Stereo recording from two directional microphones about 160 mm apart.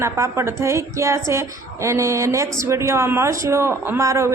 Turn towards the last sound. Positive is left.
turn(degrees=-20)  # may be behind; listen again after turning